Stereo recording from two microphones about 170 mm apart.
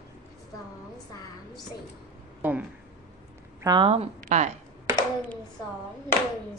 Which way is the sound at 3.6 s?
20° right (ahead or behind).